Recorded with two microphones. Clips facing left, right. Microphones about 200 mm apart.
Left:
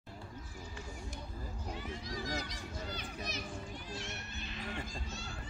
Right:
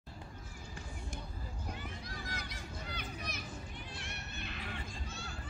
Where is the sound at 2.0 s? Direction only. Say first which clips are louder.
Left 6 dB; 60° right (ahead or behind).